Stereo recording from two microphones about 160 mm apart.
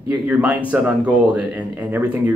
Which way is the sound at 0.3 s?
10° right (ahead or behind).